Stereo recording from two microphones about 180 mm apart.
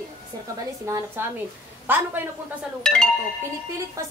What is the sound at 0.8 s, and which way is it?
A woman's voice, 15° right (ahead or behind).